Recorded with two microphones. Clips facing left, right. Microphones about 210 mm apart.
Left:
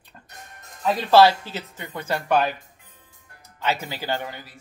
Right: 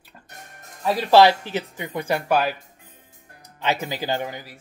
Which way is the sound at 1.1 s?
15° right (ahead or behind).